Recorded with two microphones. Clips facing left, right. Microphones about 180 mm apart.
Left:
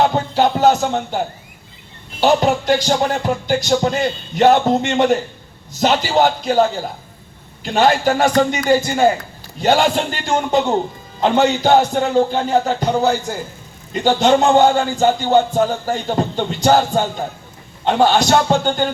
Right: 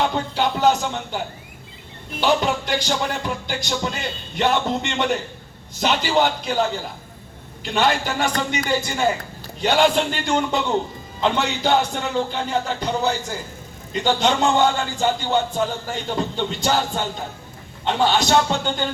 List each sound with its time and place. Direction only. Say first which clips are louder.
0.0 s music: left 6 dB; 45° left (ahead or behind)
2.2 s speech: left 6 dB; 45° left (ahead or behind)